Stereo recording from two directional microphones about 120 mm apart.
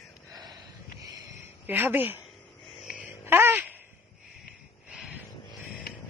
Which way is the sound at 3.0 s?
20° right (ahead or behind).